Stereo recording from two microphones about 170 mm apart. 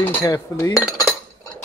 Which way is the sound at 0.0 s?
15° left (ahead or behind).